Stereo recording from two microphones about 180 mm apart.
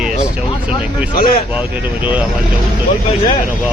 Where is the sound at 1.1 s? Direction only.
55° left (ahead or behind).